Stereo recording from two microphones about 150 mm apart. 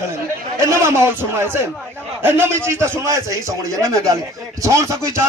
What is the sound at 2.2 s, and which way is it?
A man's voice, 15° right (ahead or behind).